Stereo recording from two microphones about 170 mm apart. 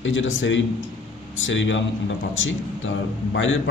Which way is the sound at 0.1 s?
90° left.